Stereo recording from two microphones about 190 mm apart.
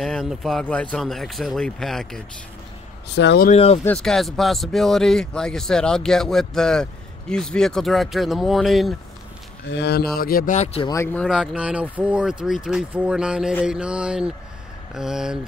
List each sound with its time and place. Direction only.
0.0 s speech: centre (ahead or behind)
3.2 s speech: 65° left (ahead or behind)
3.4 s speech: 30° left (ahead or behind)
3.8 s speech: 5° left (ahead or behind)
9.7 s speech: 60° left (ahead or behind); by 10.9 s 35° left (ahead or behind)
10.9 s speech: 15° left (ahead or behind)
11.2 s speech: 5° right (ahead or behind)